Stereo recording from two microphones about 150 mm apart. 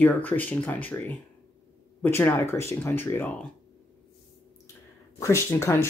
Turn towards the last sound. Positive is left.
turn(degrees=15)  # may be behind; listen again after turning